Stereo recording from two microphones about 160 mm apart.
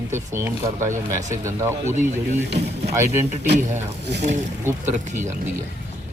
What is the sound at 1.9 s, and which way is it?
Speech, 50° right (ahead or behind).